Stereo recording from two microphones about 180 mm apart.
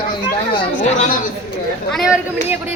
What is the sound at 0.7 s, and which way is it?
Speech, 45° left (ahead or behind).